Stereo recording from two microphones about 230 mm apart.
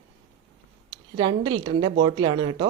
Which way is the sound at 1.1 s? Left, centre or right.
Right.